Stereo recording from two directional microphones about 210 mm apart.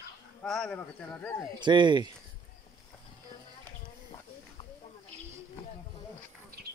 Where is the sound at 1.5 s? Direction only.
20° right (ahead or behind).